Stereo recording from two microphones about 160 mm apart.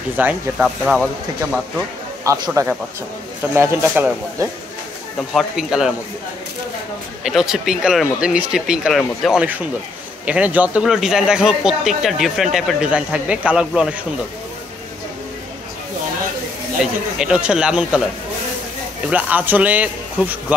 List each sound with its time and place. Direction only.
0.2 s speech: 5° right (ahead or behind)
2.2 s a man's voice: 20° right (ahead or behind)
5.3 s speech: 5° right (ahead or behind)
7.2 s speech: 5° right (ahead or behind)
16.8 s speech: 5° right (ahead or behind)
19.0 s speech: 10° right (ahead or behind)